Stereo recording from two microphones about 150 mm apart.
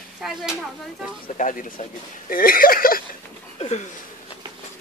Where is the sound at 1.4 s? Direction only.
60° left (ahead or behind).